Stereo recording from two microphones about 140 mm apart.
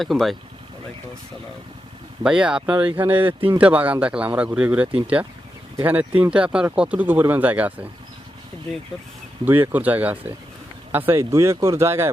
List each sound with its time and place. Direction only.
0.0 s speech: centre (ahead or behind)
2.2 s speech: 5° right (ahead or behind)
9.5 s speech: 15° right (ahead or behind)